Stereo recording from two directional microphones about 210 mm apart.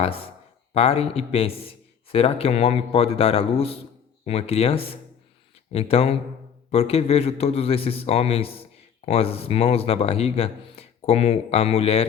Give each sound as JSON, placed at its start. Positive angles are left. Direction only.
{"t": 0.0, "sound": "a man's voice", "side_deg": 25}